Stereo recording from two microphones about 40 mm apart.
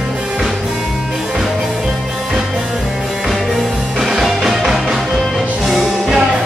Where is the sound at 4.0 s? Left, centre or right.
Centre.